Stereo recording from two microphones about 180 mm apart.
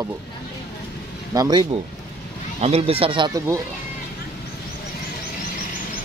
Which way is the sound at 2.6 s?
35° right (ahead or behind).